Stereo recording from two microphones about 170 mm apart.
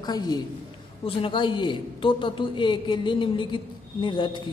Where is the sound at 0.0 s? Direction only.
25° left (ahead or behind).